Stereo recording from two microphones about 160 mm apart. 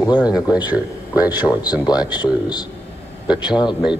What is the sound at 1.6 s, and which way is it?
Speech, 25° left (ahead or behind).